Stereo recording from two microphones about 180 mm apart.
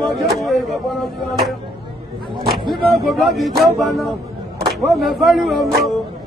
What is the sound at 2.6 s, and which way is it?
Speech, centre (ahead or behind).